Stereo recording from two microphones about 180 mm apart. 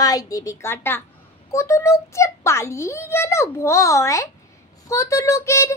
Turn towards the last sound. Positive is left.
turn(degrees=15)  # may be behind; listen again after turning